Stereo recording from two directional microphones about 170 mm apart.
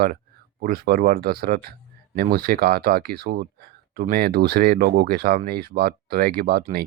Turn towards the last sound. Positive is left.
turn(degrees=-60)  # may be behind; listen again after turning